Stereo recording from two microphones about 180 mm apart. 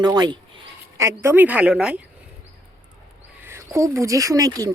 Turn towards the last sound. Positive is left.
turn(degrees=-20)  # may be behind; listen again after turning